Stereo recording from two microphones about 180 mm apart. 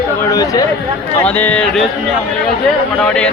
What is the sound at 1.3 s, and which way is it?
Speech, 10° left (ahead or behind).